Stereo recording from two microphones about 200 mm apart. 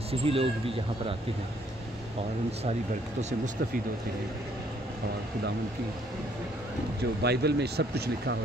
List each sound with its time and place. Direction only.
0.1 s speech: 30° right (ahead or behind)
7.2 s speech: 55° right (ahead or behind)